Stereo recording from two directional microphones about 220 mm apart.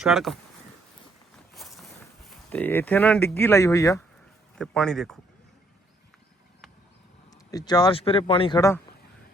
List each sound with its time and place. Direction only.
0.0 s speech: centre (ahead or behind)
1.5 s vehicle: centre (ahead or behind)
2.3 s speech: 5° left (ahead or behind)
4.5 s speech: 5° left (ahead or behind)
7.3 s speech: 15° left (ahead or behind)